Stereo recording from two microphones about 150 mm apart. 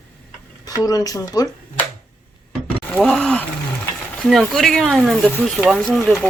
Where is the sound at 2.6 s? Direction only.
10° left (ahead or behind).